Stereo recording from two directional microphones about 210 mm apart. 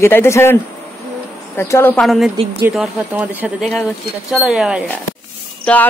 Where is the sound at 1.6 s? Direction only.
10° left (ahead or behind); by 4.8 s 5° right (ahead or behind).